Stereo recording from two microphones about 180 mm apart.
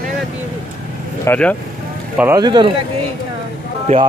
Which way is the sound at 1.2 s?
10° left (ahead or behind).